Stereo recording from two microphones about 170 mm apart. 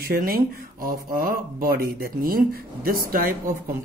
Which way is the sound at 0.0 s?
60° right (ahead or behind).